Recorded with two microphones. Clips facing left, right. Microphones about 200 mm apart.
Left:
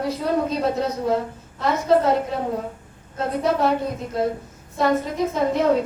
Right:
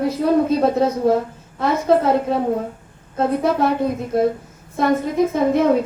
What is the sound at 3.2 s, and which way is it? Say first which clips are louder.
Speech: right 3 dB; 55° right (ahead or behind).